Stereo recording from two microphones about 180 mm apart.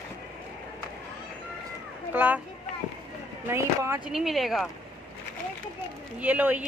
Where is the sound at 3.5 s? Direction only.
15° right (ahead or behind).